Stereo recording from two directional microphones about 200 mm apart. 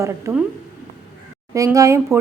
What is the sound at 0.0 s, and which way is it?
Speech, 10° right (ahead or behind).